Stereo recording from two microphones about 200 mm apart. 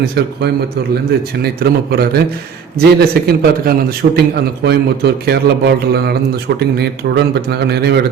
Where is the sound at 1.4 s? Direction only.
50° right (ahead or behind).